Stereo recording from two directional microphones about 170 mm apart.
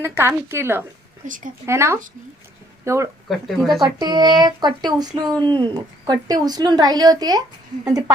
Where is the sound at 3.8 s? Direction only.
25° right (ahead or behind).